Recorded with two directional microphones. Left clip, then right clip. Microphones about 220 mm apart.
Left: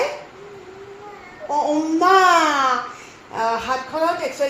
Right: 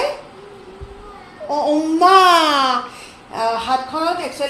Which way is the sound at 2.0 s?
15° right (ahead or behind).